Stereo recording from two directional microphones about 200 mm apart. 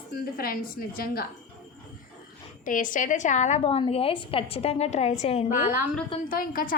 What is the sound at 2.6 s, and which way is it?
A woman's voice, 40° left (ahead or behind).